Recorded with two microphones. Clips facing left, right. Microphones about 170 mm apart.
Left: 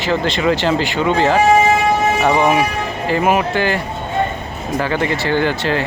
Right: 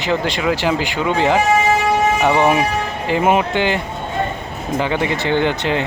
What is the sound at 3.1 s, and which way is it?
Speech, 25° right (ahead or behind).